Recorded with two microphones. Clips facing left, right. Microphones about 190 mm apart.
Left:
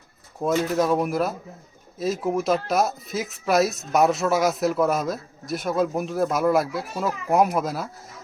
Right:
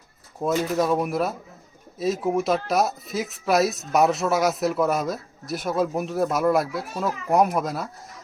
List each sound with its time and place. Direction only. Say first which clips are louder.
0.3 s speech: left 1 dB; centre (ahead or behind)